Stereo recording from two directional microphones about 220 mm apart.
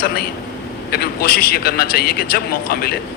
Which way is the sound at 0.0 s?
45° left (ahead or behind).